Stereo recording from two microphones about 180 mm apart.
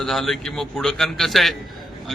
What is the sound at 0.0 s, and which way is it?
Speech, centre (ahead or behind).